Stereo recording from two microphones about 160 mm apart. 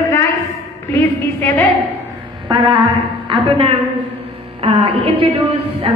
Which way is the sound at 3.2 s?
35° right (ahead or behind).